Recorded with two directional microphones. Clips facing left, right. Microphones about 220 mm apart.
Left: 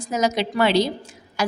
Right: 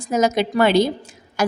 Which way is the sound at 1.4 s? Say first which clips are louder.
Right 4 dB; 50° right (ahead or behind).